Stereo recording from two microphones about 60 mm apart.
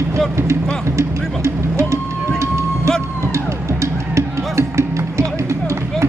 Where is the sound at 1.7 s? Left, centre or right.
Right.